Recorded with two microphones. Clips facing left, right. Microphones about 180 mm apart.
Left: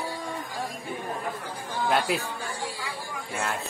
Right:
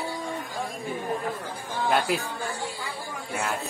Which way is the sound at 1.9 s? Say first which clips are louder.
Right 1 dB; centre (ahead or behind).